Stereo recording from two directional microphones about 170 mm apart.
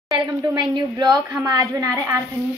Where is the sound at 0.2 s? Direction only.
20° right (ahead or behind).